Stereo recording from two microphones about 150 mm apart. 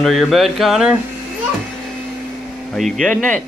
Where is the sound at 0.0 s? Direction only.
Centre (ahead or behind).